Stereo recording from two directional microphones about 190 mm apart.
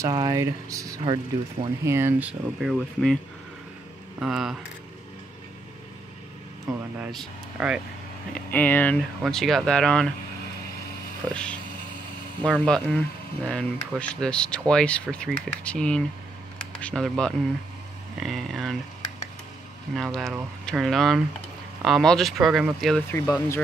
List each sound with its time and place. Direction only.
0.0 s speech: 20° right (ahead or behind)
1.9 s speech: 10° right (ahead or behind)
4.2 s speech: 5° right (ahead or behind)
7.1 s speech: centre (ahead or behind)
8.5 s speech: 10° left (ahead or behind)
11.2 s speech: 5° left (ahead or behind)
20.0 s speech: centre (ahead or behind)
23.1 s speech: 10° left (ahead or behind)